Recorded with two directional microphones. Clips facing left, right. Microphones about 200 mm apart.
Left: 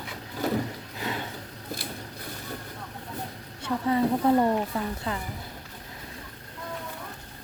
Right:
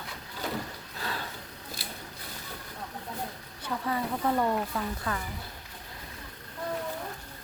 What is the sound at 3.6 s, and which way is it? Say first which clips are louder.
Speech: left 7 dB; 25° left (ahead or behind).